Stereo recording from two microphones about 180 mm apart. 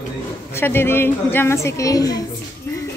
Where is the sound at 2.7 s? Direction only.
15° left (ahead or behind).